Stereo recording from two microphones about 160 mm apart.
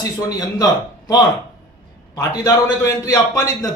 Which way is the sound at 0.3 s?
20° left (ahead or behind).